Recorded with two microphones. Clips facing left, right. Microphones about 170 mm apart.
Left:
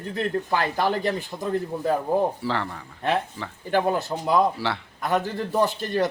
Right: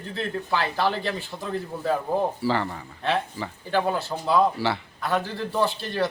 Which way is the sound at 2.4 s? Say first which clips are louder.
Right 3 dB; centre (ahead or behind).